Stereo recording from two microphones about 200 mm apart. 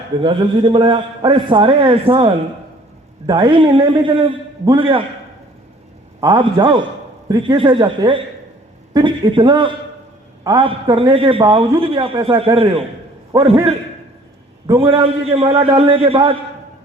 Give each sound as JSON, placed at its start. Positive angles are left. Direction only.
{"t": 0.2, "sound": "a man's voice", "side_deg": -25}
{"t": 6.1, "sound": "a man's voice", "side_deg": -20}
{"t": 13.3, "sound": "a man's voice", "side_deg": -15}
{"t": 14.7, "sound": "a man's voice", "side_deg": -15}
{"t": 15.3, "sound": "a man's voice", "side_deg": -30}